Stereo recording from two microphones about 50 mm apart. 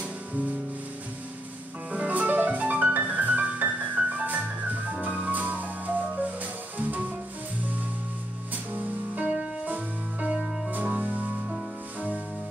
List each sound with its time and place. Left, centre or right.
1.9 s music: right
8.7 s music: right